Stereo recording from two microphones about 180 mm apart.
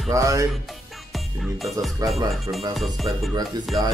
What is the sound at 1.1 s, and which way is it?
Music, centre (ahead or behind).